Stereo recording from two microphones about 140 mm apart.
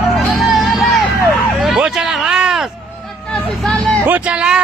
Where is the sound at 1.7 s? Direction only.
5° right (ahead or behind).